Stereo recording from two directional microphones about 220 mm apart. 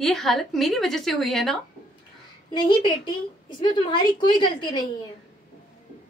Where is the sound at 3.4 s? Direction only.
20° left (ahead or behind).